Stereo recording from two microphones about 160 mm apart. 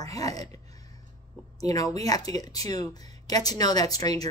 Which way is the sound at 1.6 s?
20° left (ahead or behind).